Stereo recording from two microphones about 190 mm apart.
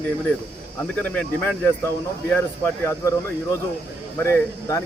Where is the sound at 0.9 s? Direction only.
5° left (ahead or behind).